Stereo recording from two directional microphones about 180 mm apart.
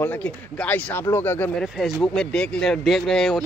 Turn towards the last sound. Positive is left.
turn(degrees=0)  # may be behind; listen again after turning